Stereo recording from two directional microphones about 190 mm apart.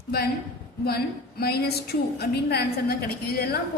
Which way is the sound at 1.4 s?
55° left (ahead or behind).